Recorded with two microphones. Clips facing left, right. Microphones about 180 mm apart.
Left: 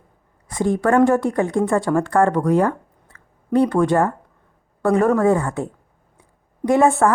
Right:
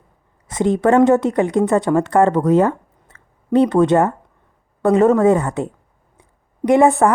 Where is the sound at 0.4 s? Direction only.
20° right (ahead or behind).